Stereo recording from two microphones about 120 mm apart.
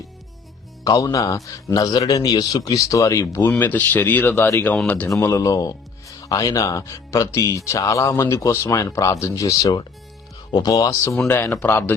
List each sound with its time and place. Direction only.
0.9 s a man's voice: 30° left (ahead or behind)
4.7 s speech: 10° left (ahead or behind)
5.1 s speech: 25° left (ahead or behind)